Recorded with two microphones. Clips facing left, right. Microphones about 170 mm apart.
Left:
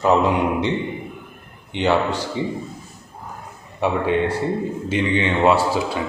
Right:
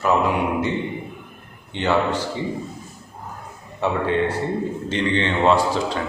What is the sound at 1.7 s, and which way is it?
Speech, 10° left (ahead or behind).